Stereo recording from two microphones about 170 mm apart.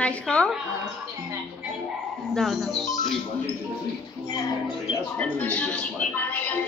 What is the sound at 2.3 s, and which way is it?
Speech, centre (ahead or behind).